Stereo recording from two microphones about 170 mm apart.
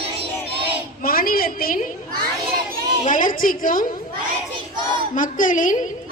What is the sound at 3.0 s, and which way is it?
Speech, 50° left (ahead or behind).